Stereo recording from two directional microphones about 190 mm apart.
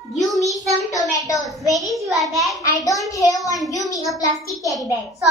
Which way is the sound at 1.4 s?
Centre (ahead or behind).